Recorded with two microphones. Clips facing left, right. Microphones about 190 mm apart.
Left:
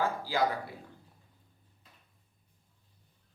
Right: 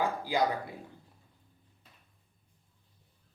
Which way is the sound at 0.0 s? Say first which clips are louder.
Right 1 dB; 15° right (ahead or behind).